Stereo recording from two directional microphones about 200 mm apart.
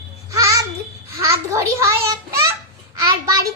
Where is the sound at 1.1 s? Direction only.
15° right (ahead or behind).